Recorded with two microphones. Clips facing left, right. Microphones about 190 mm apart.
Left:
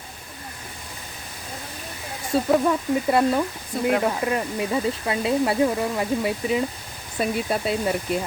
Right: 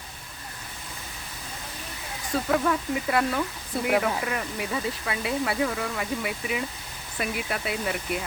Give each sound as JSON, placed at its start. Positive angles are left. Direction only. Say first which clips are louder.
{"t": 2.3, "sound": "speech", "louder": "left 5 dB", "side_deg": 25}